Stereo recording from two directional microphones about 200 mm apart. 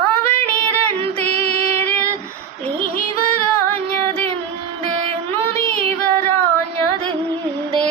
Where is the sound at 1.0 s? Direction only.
30° right (ahead or behind).